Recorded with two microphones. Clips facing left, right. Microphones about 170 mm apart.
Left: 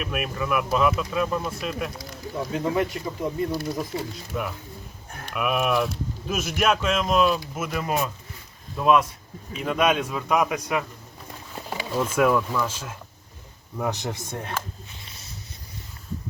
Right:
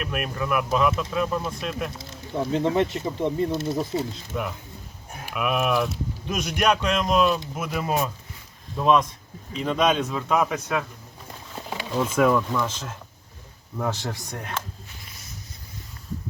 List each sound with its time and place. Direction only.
0.0 s speech: centre (ahead or behind)
2.0 s speech: 25° right (ahead or behind)
4.3 s a man's voice: centre (ahead or behind)
11.5 s a sound: 5° left (ahead or behind)
12.1 s speech: centre (ahead or behind)
13.9 s speech: 20° left (ahead or behind)